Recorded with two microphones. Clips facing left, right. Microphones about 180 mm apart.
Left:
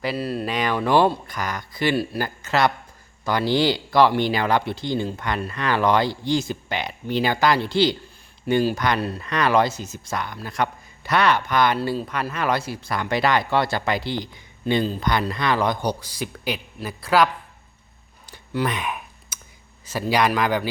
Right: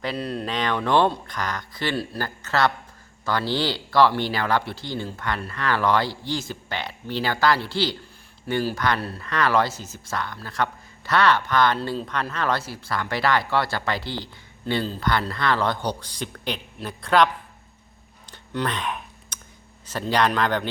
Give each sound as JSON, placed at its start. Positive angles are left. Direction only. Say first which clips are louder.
{"t": 0.0, "sound": "speech", "louder": "left 3 dB", "side_deg": 5}
{"t": 18.3, "sound": "a sound", "louder": "left 2 dB", "side_deg": 10}
{"t": 19.8, "sound": "speech", "louder": "left 1 dB", "side_deg": 10}